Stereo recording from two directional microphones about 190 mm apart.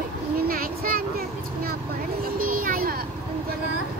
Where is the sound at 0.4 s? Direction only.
50° right (ahead or behind).